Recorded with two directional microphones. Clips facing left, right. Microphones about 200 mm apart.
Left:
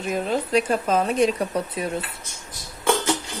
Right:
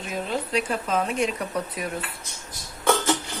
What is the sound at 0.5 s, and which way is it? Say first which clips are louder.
Speech: left 5 dB; 40° left (ahead or behind).